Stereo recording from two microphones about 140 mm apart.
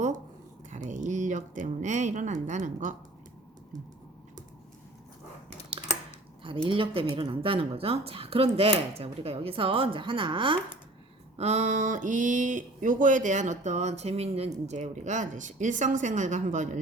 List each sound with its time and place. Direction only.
0.7 s speech: 60° right (ahead or behind)
6.7 s speech: 40° right (ahead or behind)
11.3 s speech: 55° right (ahead or behind)